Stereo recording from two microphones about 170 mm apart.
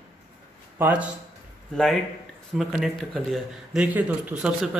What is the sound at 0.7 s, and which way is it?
Speech, 10° right (ahead or behind).